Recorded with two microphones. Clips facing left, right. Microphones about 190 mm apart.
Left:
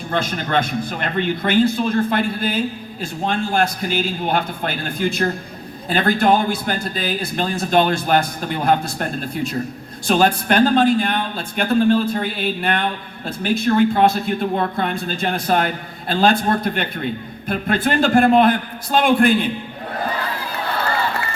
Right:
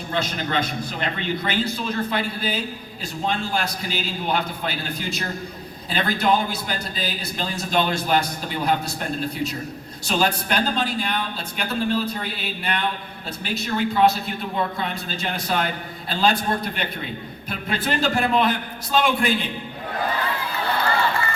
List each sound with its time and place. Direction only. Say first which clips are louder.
0.1 s a man's voice: left 4 dB; 50° left (ahead or behind)